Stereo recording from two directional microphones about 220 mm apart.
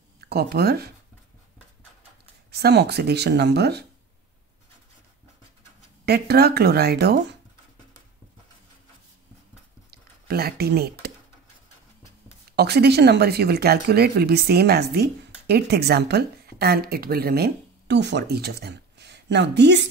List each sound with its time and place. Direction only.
0.2 s speech: 45° right (ahead or behind)
2.5 s speech: 50° right (ahead or behind)
6.0 s speech: 45° right (ahead or behind)
9.8 s squish: 45° right (ahead or behind)
12.4 s speech: 45° right (ahead or behind)